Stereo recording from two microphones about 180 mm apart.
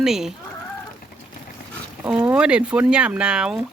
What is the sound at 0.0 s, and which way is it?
Speech, centre (ahead or behind).